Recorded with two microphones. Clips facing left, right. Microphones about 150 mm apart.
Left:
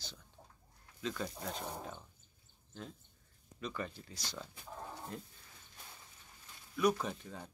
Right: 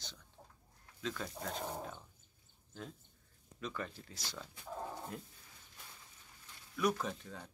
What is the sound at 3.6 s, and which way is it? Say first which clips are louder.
Speech: left 1 dB; centre (ahead or behind).